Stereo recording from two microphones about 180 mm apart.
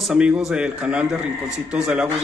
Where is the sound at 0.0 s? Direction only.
5° right (ahead or behind).